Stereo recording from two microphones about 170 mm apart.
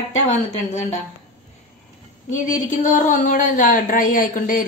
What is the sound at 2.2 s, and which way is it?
Speech, 50° left (ahead or behind).